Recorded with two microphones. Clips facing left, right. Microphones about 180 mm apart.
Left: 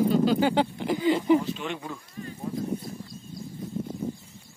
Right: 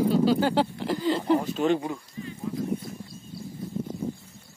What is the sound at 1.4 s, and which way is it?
Speech, 40° right (ahead or behind).